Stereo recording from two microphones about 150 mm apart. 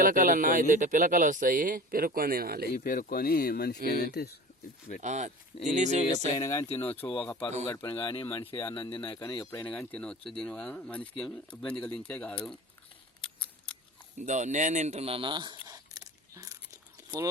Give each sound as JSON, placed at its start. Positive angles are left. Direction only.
{"t": 0.0, "sound": "speech", "side_deg": -65}
{"t": 2.7, "sound": "speech", "side_deg": 70}
{"t": 5.0, "sound": "speech", "side_deg": -50}
{"t": 6.3, "sound": "speech", "side_deg": 20}
{"t": 6.7, "sound": "speech", "side_deg": 40}
{"t": 6.9, "sound": "speech", "side_deg": 10}
{"t": 7.9, "sound": "speech", "side_deg": 35}
{"t": 9.4, "sound": "speech", "side_deg": 15}
{"t": 13.2, "sound": "scissors", "side_deg": 5}
{"t": 14.2, "sound": "a sound", "side_deg": -55}